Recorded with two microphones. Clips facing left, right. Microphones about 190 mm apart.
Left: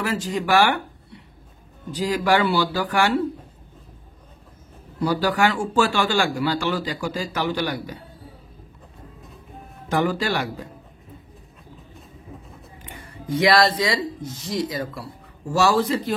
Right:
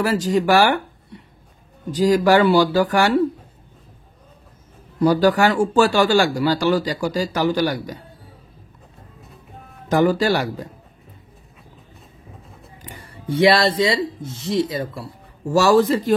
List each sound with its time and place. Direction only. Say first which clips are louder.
0.0 s a man's voice: right 6 dB; 40° right (ahead or behind)
1.9 s a man's voice: right 6 dB; 40° right (ahead or behind)
5.0 s a man's voice: right 5 dB; 45° right (ahead or behind)
9.8 s a man's voice: right 6 dB; 40° right (ahead or behind)
12.8 s speech: right 4 dB; 30° right (ahead or behind)
15.5 s speech: right 5 dB; 45° right (ahead or behind)